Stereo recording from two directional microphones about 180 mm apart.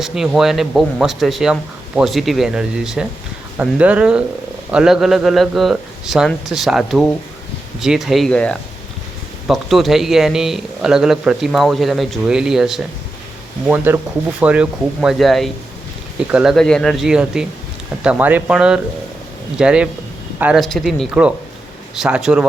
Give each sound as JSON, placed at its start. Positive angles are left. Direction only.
{"t": 0.0, "sound": "a man's voice", "side_deg": 0}